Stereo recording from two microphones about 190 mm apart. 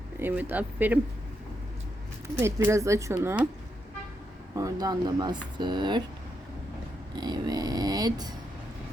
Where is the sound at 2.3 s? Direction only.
15° right (ahead or behind).